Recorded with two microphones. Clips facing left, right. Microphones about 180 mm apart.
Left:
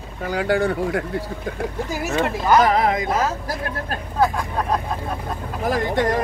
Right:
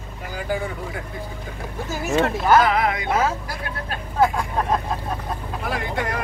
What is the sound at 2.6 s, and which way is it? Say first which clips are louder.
Speech: left 3 dB; 40° left (ahead or behind).